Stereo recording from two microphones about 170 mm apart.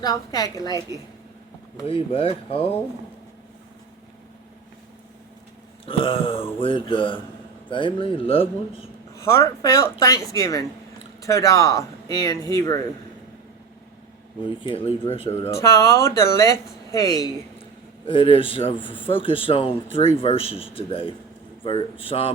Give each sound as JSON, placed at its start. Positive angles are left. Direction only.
{"t": 0.0, "sound": "speech", "side_deg": 20}
{"t": 1.9, "sound": "a man's voice", "side_deg": 30}
{"t": 5.8, "sound": "a man's voice", "side_deg": 30}
{"t": 9.1, "sound": "speech", "side_deg": 15}
{"t": 14.4, "sound": "a man's voice", "side_deg": 30}
{"t": 15.4, "sound": "speech", "side_deg": 15}
{"t": 18.0, "sound": "a man's voice", "side_deg": 30}